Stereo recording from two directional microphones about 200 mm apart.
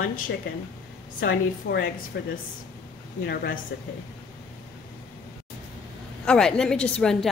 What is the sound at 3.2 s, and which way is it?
Speech, 50° left (ahead or behind).